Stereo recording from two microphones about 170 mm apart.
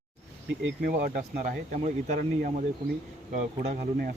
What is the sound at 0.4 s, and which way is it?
Speech, 80° right.